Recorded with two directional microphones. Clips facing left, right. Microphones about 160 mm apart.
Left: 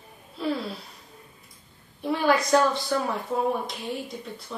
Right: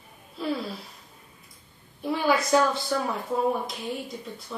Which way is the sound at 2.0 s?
5° right (ahead or behind).